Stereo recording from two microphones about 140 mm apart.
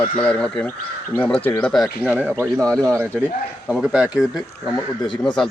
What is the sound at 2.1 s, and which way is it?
Speech, 10° right (ahead or behind).